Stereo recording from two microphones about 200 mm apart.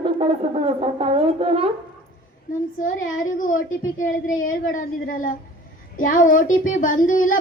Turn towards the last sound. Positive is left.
turn(degrees=40)  # may be behind; listen again after turning